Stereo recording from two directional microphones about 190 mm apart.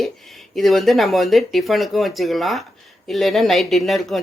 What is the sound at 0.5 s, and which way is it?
Speech, centre (ahead or behind).